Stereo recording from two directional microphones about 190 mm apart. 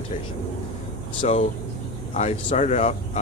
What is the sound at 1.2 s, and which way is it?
Speech, 35° left (ahead or behind).